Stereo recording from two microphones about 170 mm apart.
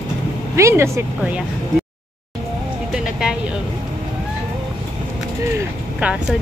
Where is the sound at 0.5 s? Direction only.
15° right (ahead or behind).